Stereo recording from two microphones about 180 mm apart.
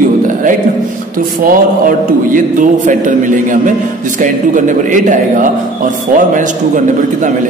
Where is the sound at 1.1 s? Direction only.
50° right (ahead or behind).